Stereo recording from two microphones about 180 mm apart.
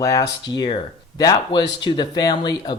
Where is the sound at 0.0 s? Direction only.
20° left (ahead or behind).